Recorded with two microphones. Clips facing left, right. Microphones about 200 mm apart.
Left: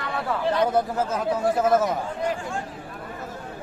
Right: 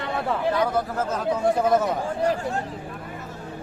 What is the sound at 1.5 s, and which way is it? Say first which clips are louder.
Speech: even; 5° left (ahead or behind).